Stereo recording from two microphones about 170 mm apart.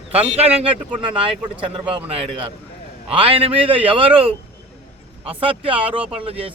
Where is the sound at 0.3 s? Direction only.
35° right (ahead or behind).